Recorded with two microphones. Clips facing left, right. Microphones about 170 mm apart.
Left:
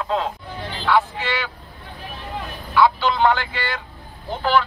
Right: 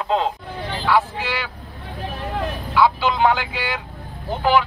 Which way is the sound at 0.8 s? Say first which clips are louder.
Even; 5° right (ahead or behind).